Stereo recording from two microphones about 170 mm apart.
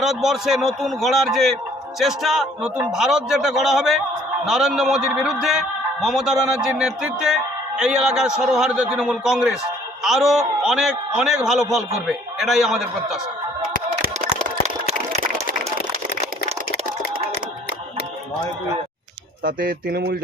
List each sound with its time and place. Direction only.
0.0 s a man's voice: centre (ahead or behind)
15.9 s a sound: 40° right (ahead or behind)
19.4 s speech: 55° right (ahead or behind)